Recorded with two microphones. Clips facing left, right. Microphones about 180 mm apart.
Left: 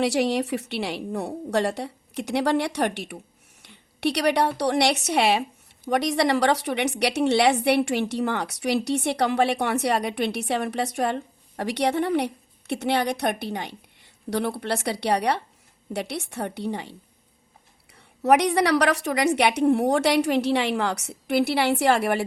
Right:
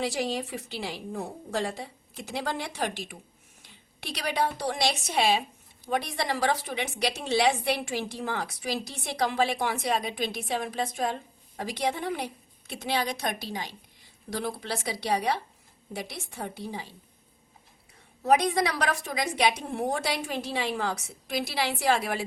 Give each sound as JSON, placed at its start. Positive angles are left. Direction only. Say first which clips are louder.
{"t": 0.0, "sound": "a woman's voice", "louder": "left 7 dB", "side_deg": 70}
{"t": 17.9, "sound": "a woman's voice", "louder": "left 4 dB", "side_deg": 75}